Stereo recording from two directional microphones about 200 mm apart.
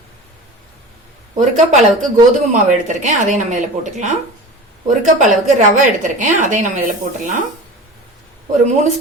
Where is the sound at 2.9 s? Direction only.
40° right (ahead or behind).